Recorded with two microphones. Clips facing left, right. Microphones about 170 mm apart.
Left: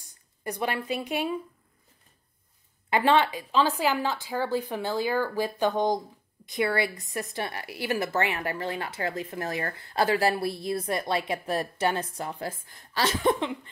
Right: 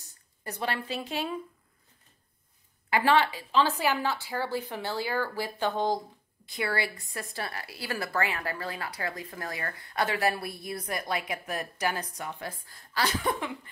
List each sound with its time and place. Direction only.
0.4 s speech: 15° left (ahead or behind)
2.9 s a woman's voice: 20° left (ahead or behind)